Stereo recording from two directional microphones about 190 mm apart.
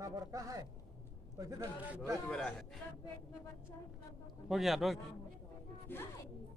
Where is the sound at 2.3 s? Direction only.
5° left (ahead or behind).